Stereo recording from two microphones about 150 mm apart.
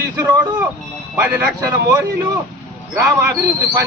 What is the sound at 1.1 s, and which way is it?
Speech, 15° right (ahead or behind).